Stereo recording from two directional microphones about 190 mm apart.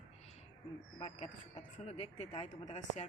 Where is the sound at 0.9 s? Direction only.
35° left (ahead or behind).